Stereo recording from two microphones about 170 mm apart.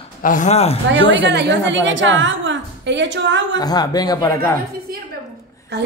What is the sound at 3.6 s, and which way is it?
Speech, 25° left (ahead or behind).